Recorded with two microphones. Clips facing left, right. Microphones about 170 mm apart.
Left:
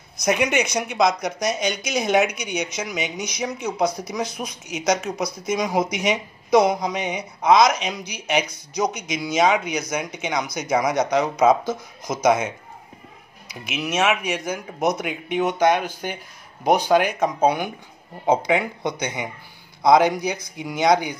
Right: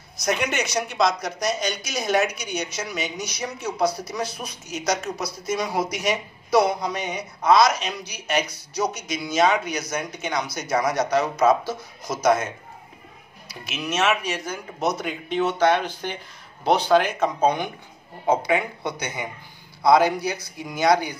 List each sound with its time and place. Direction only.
0.2 s speech: 15° left (ahead or behind)
13.5 s speech: 15° left (ahead or behind)